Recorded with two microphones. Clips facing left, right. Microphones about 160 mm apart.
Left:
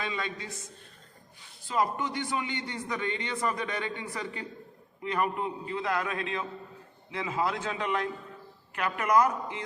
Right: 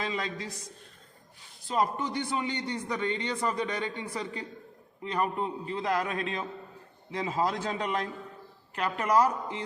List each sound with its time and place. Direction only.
0.0 s speech: 35° right (ahead or behind)
1.6 s speech: 35° right (ahead or behind)